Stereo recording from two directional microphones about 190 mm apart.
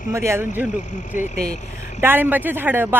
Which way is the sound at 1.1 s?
40° left (ahead or behind).